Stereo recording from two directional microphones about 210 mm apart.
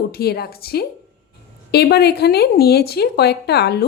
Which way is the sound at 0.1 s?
50° left (ahead or behind).